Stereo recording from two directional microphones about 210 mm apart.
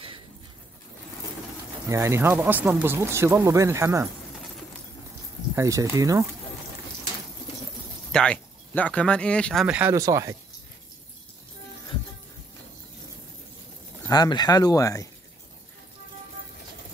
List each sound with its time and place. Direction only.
1.9 s speech: 15° right (ahead or behind)
5.6 s speech: 15° right (ahead or behind)
8.1 s speech: 5° left (ahead or behind); by 10.3 s 15° right (ahead or behind)
14.0 s speech: 20° left (ahead or behind)